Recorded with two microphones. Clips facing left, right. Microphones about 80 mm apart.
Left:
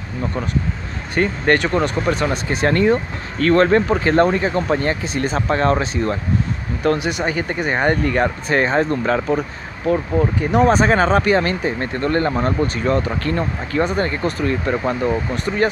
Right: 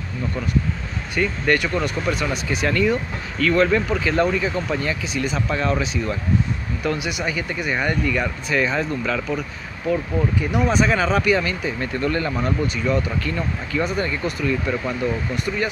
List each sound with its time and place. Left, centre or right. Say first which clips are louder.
1.1 s speech: left 4 dB; left